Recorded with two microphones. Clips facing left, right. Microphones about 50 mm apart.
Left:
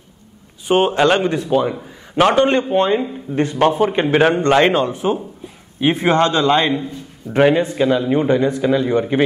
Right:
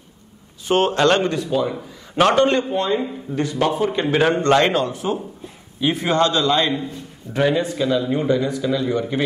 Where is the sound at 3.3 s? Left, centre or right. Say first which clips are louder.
Left 5 dB; left.